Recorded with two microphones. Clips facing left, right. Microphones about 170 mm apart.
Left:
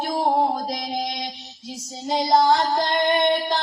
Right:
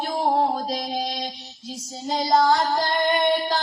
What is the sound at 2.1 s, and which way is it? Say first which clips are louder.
Female singing: left 1 dB; 20° left (ahead or behind).